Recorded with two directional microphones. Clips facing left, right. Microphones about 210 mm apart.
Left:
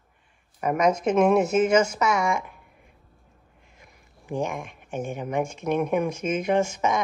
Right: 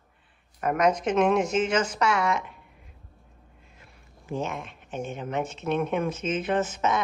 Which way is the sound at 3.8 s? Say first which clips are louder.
Left 2 dB; 15° left (ahead or behind).